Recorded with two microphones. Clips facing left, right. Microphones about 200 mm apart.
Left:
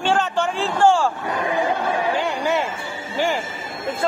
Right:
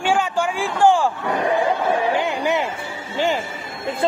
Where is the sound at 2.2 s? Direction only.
15° right (ahead or behind).